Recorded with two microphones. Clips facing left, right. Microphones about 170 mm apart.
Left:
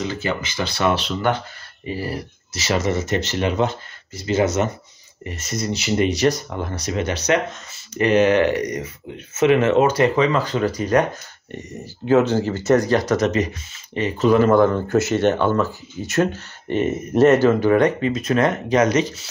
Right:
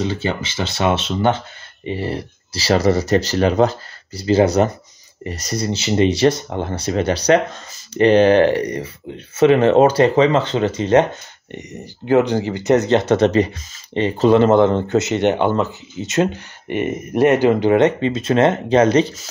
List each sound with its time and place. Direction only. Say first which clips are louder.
0.0 s speech: right 3 dB; 30° right (ahead or behind)